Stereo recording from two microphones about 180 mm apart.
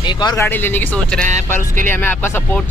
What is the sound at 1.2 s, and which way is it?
Speech, 40° right (ahead or behind).